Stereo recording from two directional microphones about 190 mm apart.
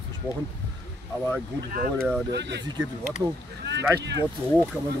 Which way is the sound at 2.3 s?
65° right (ahead or behind).